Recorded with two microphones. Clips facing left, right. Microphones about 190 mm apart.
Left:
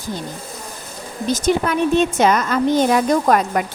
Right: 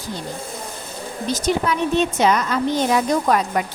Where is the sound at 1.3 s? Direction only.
50° left (ahead or behind).